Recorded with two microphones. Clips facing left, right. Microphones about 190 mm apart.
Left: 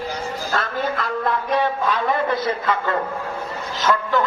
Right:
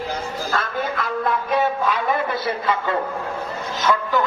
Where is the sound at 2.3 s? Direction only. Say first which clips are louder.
Left 1 dB; 10° right (ahead or behind).